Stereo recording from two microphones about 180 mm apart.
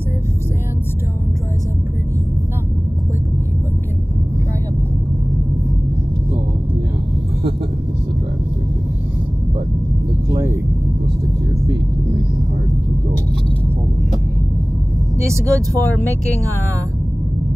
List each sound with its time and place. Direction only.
10.3 s vehicle: 15° right (ahead or behind)
15.2 s speech: 15° right (ahead or behind)